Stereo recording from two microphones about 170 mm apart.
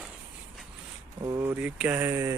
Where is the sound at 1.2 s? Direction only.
20° right (ahead or behind).